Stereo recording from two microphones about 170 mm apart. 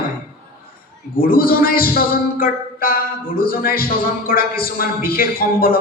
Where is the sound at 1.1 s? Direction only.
60° left (ahead or behind).